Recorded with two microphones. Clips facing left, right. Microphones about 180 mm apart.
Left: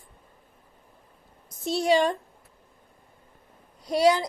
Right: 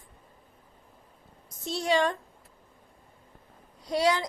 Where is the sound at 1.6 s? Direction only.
10° left (ahead or behind).